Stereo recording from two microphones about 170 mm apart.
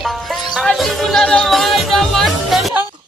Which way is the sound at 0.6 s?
Centre (ahead or behind).